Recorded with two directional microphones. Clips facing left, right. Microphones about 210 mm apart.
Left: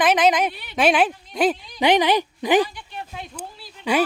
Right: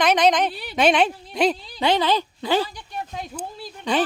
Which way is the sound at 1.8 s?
15° left (ahead or behind).